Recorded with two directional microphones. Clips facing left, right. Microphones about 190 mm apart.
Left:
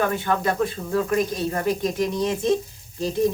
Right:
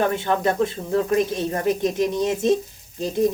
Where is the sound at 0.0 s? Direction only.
25° right (ahead or behind).